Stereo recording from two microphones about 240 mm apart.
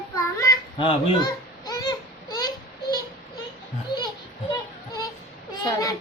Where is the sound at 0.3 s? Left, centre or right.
Centre.